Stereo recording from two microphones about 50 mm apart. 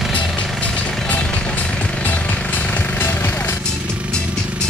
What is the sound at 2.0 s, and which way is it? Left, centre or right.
Jackhammer, left.